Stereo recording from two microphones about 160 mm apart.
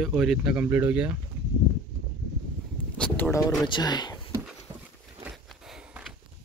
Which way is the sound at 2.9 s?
10° left (ahead or behind).